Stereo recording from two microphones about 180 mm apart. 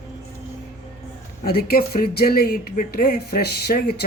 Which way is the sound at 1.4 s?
55° left (ahead or behind).